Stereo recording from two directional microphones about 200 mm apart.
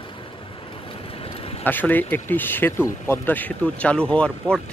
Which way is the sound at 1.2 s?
30° left (ahead or behind).